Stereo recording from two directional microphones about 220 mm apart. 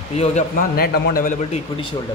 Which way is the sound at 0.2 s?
35° left (ahead or behind).